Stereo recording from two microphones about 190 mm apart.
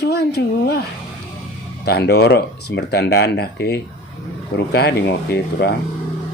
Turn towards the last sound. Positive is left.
turn(degrees=55)  # may be behind; listen again after turning